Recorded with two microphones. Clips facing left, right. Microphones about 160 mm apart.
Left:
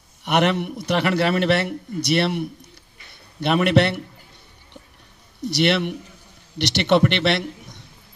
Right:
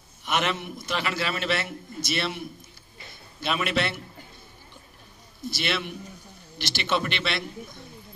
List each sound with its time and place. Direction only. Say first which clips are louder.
0.2 s a man's voice: left 8 dB; 65° left (ahead or behind)
5.4 s a man's voice: left 10 dB; 70° left (ahead or behind)